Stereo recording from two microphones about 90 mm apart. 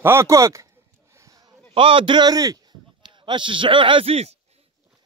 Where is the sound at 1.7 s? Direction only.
80° right.